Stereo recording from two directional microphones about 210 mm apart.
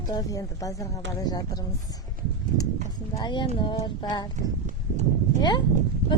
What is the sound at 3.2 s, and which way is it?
Speech, 20° left (ahead or behind).